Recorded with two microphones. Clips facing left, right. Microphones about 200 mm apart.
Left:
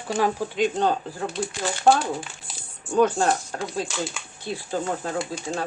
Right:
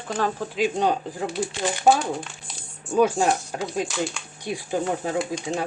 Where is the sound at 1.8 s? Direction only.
Centre (ahead or behind); by 3.7 s 15° right (ahead or behind).